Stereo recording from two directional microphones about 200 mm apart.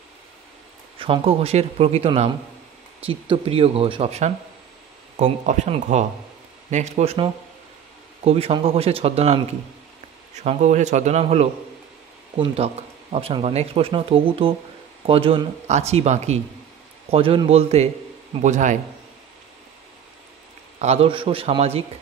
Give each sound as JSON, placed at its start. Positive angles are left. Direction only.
{"t": 0.9, "sound": "speech", "side_deg": -25}
{"t": 20.8, "sound": "speech", "side_deg": -30}